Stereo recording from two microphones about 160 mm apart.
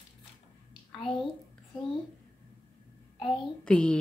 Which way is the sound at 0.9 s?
Centre (ahead or behind).